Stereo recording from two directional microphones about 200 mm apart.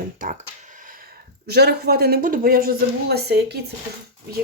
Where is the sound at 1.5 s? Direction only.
50° right (ahead or behind).